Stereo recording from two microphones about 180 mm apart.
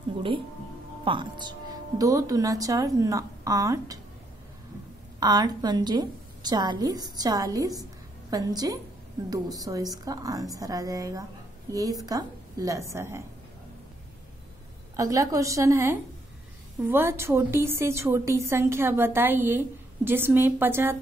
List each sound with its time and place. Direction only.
1.0 s a woman's voice: 25° right (ahead or behind)
5.2 s a woman's voice: 20° right (ahead or behind)
15.0 s a woman's voice: 20° right (ahead or behind)